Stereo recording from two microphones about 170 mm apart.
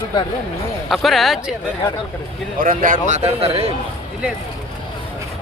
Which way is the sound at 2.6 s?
55° right (ahead or behind).